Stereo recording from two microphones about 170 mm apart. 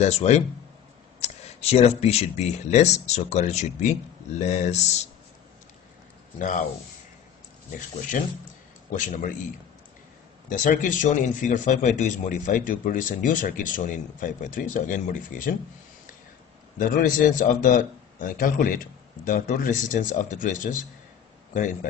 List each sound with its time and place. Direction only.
0.0 s speech: 40° left (ahead or behind)
8.2 s speech: 50° left (ahead or behind)
10.5 s speech: 50° left (ahead or behind)
16.7 s speech: 55° left (ahead or behind)